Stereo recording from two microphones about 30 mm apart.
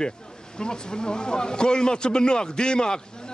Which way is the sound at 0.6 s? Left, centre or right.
Left.